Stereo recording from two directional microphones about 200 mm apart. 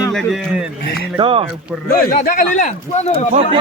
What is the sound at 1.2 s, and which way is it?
Speech, 25° right (ahead or behind).